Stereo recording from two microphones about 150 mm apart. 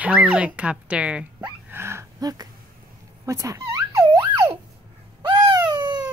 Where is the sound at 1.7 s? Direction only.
15° right (ahead or behind).